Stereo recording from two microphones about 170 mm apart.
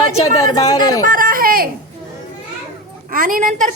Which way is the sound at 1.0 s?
55° right (ahead or behind).